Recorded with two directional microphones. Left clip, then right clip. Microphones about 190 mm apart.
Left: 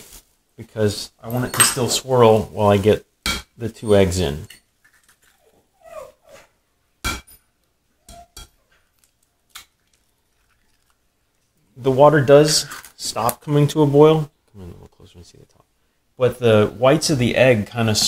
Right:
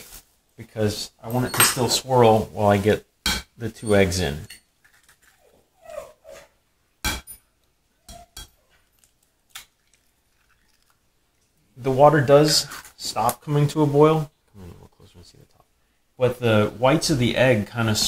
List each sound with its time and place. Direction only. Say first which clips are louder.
0.6 s speech: left 4 dB; 35° left (ahead or behind)
2.6 s speech: left 3 dB; 25° left (ahead or behind)
11.8 s speech: left 3 dB; 35° left (ahead or behind)